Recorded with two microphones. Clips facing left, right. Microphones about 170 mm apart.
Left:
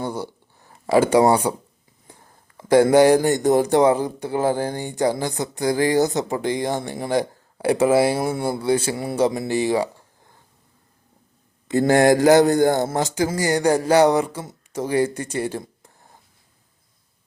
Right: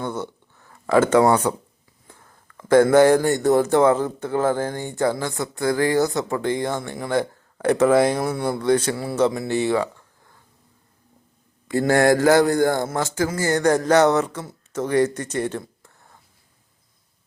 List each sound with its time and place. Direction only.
0.0 s a sound: 35° left (ahead or behind)
0.7 s speech: 15° left (ahead or behind)
8.2 s speech: 25° left (ahead or behind)
8.5 s speech: 10° left (ahead or behind)
11.7 s speech: 20° left (ahead or behind)